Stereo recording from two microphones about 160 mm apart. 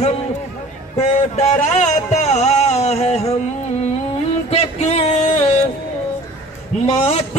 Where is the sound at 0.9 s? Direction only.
40° left (ahead or behind).